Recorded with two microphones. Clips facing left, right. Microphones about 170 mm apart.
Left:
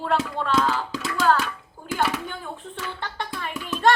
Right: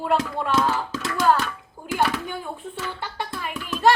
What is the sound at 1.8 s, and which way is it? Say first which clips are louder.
Bathtub: right 2 dB; 15° right (ahead or behind).